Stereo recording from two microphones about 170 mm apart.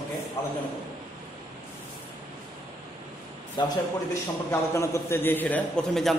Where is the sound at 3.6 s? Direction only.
25° left (ahead or behind).